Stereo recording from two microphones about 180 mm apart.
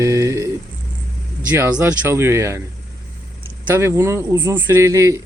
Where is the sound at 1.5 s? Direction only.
10° right (ahead or behind).